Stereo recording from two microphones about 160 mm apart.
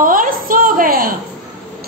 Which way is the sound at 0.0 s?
60° right (ahead or behind).